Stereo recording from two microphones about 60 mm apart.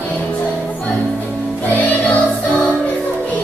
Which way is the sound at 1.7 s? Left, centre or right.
Left.